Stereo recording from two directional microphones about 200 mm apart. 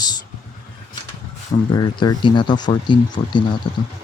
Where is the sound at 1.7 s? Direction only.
20° left (ahead or behind).